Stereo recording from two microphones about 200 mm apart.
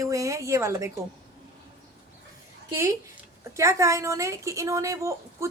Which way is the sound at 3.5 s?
15° right (ahead or behind).